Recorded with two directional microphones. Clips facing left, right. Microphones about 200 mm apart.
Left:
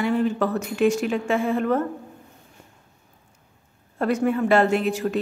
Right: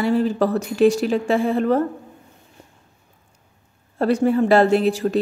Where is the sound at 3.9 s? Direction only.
35° right (ahead or behind).